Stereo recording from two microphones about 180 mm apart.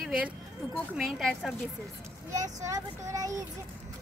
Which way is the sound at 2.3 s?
20° right (ahead or behind).